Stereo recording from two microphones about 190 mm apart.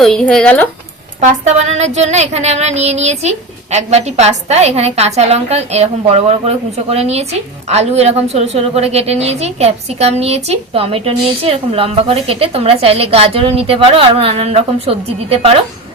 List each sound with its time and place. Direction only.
0.0 s speech: 5° left (ahead or behind)
1.2 s a woman's voice: 35° right (ahead or behind)